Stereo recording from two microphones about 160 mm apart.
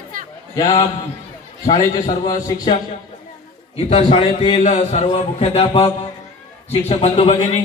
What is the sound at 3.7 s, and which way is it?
A man's voice, 40° left (ahead or behind).